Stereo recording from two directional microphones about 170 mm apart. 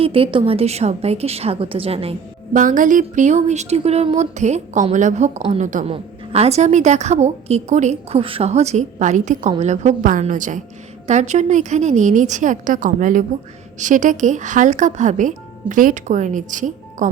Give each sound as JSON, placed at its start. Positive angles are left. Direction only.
{"t": 0.0, "sound": "a woman's voice", "side_deg": -35}
{"t": 2.5, "sound": "a woman's voice", "side_deg": -50}